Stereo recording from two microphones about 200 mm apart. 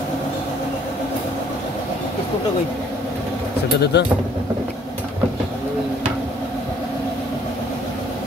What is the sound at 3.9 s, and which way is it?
Speech, 55° left (ahead or behind).